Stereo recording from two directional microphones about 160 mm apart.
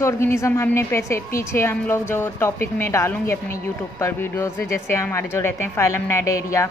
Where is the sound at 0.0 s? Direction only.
15° left (ahead or behind).